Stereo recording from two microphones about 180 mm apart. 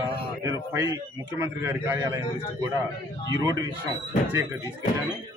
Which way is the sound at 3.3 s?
20° right (ahead or behind).